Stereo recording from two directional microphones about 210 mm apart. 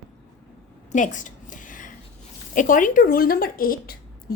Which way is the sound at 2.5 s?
40° left (ahead or behind).